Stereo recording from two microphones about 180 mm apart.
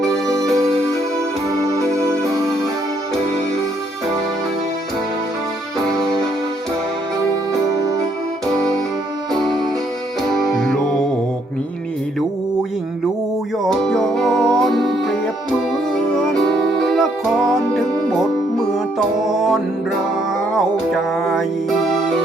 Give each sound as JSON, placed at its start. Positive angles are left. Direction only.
{"t": 0.0, "sound": "music", "side_deg": 5}
{"t": 5.8, "sound": "music", "side_deg": 5}
{"t": 7.5, "sound": "music", "side_deg": -20}
{"t": 9.3, "sound": "music", "side_deg": 0}
{"t": 13.7, "sound": "music", "side_deg": 5}